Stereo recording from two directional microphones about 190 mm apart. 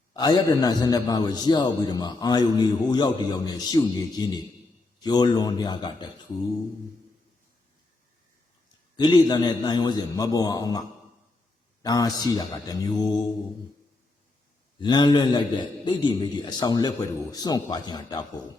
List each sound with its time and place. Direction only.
0.1 s a man's voice: 20° left (ahead or behind)
9.0 s a man's voice: 20° left (ahead or behind)
14.8 s a man's voice: 25° left (ahead or behind)